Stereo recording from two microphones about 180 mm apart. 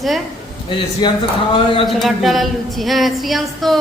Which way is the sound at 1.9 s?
Centre (ahead or behind).